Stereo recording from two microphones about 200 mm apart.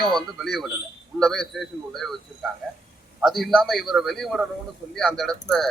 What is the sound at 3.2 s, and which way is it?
Speech, centre (ahead or behind).